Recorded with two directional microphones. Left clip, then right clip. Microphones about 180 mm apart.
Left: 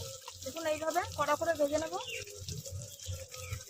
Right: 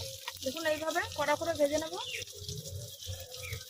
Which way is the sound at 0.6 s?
35° right (ahead or behind).